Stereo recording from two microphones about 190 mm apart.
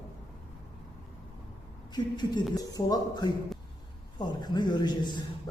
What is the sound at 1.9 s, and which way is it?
Speech, 20° left (ahead or behind).